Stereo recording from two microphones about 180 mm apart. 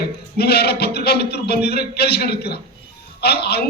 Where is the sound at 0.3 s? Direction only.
65° left (ahead or behind).